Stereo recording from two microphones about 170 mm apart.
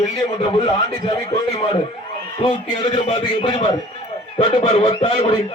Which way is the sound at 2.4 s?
35° left (ahead or behind).